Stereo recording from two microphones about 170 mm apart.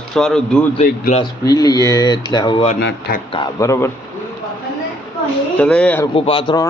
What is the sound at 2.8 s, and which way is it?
Speech, 75° left (ahead or behind).